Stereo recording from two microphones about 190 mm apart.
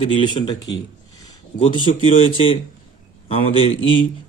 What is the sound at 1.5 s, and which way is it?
Speech, 25° left (ahead or behind).